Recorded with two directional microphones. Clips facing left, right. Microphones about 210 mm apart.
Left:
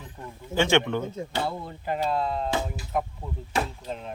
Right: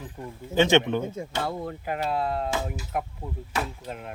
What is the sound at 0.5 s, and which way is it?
Speech, 20° right (ahead or behind).